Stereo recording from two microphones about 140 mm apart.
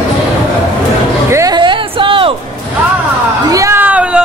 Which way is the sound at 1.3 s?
20° right (ahead or behind).